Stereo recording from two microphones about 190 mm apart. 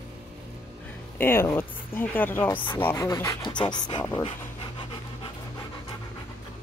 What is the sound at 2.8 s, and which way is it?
Speech, 15° left (ahead or behind).